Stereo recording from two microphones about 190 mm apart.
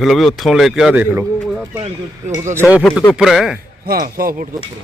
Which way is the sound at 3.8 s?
50° right (ahead or behind).